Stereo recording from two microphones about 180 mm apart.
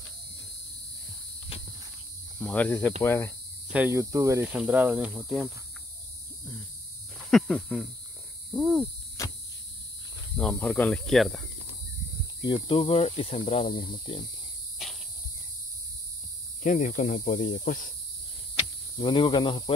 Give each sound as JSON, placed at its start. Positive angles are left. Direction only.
{"t": 1.5, "sound": "cricket", "side_deg": 35}
{"t": 2.3, "sound": "cricket", "side_deg": 10}
{"t": 3.7, "sound": "speech", "side_deg": -10}
{"t": 7.2, "sound": "speech", "side_deg": 0}
{"t": 8.5, "sound": "cricket", "side_deg": -5}
{"t": 9.2, "sound": "cricket", "side_deg": 20}
{"t": 10.3, "sound": "speech", "side_deg": 5}
{"t": 12.4, "sound": "speech", "side_deg": 30}
{"t": 14.8, "sound": "cricket", "side_deg": 0}
{"t": 16.6, "sound": "speech", "side_deg": 45}
{"t": 18.9, "sound": "speech", "side_deg": 30}